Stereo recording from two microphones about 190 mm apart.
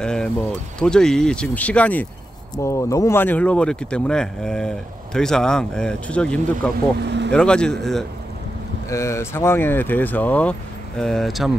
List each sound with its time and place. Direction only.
0.0 s a sound: 5° left (ahead or behind)
0.7 s speech: 5° left (ahead or behind)
7.1 s speech: 65° right (ahead or behind)
7.3 s speech: 5° left (ahead or behind)
8.8 s speech: 15° left (ahead or behind); by 11.5 s centre (ahead or behind)